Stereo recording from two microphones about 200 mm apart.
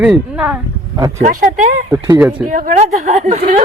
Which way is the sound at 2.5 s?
40° right (ahead or behind).